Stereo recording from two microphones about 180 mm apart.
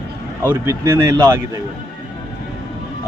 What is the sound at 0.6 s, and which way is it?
Speech, 15° right (ahead or behind).